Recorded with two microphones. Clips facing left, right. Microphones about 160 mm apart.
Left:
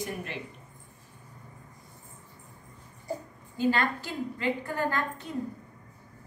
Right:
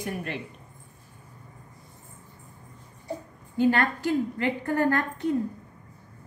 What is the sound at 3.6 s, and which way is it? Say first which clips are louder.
A woman's voice: right 4 dB; 55° right (ahead or behind).